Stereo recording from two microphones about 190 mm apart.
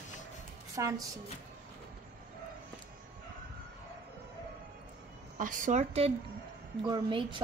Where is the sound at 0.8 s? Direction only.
15° right (ahead or behind).